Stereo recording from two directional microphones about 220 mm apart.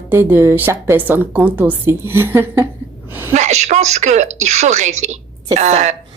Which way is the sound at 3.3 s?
30° right (ahead or behind).